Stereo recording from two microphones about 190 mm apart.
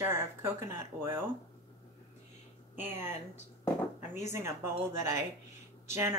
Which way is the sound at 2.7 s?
10° right (ahead or behind).